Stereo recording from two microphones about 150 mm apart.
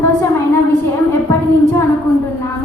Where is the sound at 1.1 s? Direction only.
15° left (ahead or behind).